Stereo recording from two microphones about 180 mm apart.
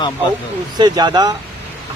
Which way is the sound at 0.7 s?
25° right (ahead or behind).